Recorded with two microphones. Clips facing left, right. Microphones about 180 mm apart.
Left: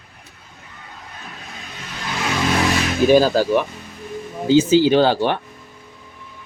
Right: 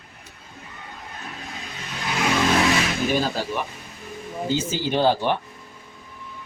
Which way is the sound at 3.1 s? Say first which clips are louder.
Left 14 dB; 90° left.